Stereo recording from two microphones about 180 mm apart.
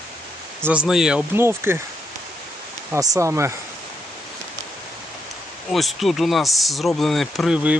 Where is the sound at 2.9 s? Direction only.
15° right (ahead or behind).